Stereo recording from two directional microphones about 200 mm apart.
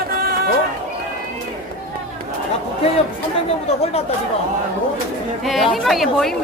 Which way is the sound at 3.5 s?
30° left (ahead or behind).